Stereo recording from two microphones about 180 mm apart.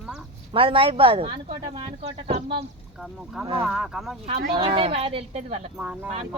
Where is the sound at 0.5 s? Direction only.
30° right (ahead or behind).